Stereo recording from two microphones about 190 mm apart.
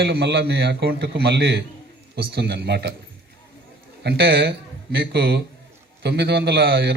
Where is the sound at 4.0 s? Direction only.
55° right (ahead or behind).